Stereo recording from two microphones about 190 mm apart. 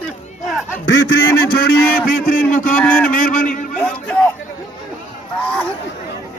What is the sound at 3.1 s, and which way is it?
Speech, 45° left (ahead or behind).